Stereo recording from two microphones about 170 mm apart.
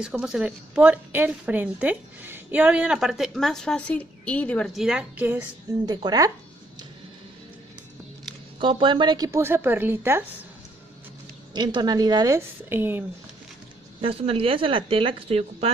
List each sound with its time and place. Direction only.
0.0 s a woman's voice: 5° right (ahead or behind)
5.9 s a woman's voice: 20° right (ahead or behind)
8.5 s speech: 30° right (ahead or behind); by 10.2 s 15° right (ahead or behind)
11.5 s a woman's voice: 25° right (ahead or behind)
14.0 s speech: 35° right (ahead or behind)